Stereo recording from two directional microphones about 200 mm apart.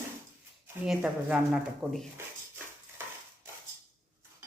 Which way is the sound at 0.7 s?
5° right (ahead or behind).